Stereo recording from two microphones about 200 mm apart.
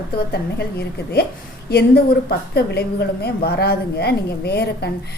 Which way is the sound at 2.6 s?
55° left (ahead or behind).